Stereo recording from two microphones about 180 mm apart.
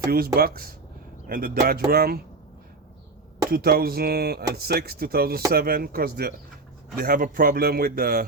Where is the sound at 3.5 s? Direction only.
55° right (ahead or behind).